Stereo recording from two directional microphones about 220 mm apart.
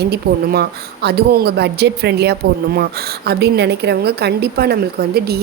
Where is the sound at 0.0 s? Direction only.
45° right (ahead or behind).